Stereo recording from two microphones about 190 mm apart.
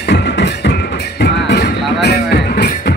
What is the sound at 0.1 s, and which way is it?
Music, 65° left (ahead or behind).